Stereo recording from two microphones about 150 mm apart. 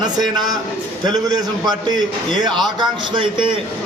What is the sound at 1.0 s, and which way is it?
A man's voice, 25° right (ahead or behind).